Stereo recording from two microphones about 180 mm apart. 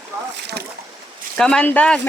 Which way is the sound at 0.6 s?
65° right (ahead or behind).